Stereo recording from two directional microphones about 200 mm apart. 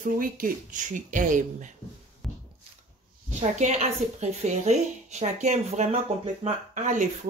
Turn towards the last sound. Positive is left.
turn(degrees=-40)  # may be behind; listen again after turning